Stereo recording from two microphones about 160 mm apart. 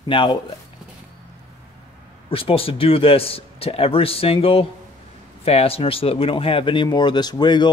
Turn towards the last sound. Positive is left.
turn(degrees=30)  # may be behind; listen again after turning